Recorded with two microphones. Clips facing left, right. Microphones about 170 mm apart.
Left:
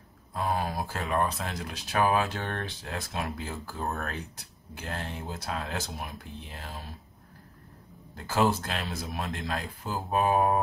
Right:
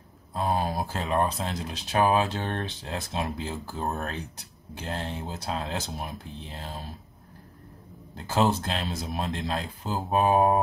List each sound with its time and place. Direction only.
0.3 s speech: 25° right (ahead or behind)
8.2 s speech: 25° right (ahead or behind)